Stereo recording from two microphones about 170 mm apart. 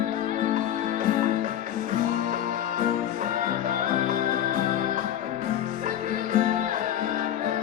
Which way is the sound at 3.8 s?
50° right (ahead or behind).